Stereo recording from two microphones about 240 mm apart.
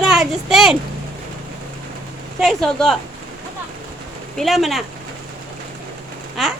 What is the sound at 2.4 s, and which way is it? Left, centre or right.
Speech, centre.